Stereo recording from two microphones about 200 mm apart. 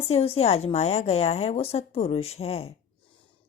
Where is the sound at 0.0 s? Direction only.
30° left (ahead or behind).